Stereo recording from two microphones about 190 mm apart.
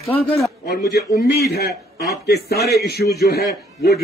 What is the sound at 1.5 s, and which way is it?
A man's voice, 55° left (ahead or behind).